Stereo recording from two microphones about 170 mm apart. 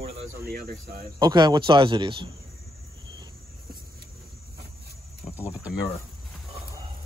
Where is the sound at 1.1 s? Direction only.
25° right (ahead or behind).